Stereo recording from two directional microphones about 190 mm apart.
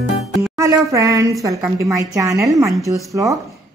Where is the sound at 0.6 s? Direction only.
15° right (ahead or behind).